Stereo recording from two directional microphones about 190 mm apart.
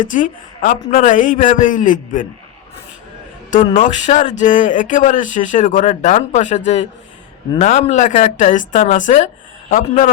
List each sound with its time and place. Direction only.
0.0 s a man's voice: 45° left (ahead or behind)
3.8 s speech: 40° left (ahead or behind)
7.6 s speech: 35° left (ahead or behind)